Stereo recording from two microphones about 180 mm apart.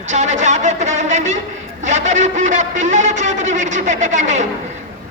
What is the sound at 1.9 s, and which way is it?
A man's voice, 40° right (ahead or behind).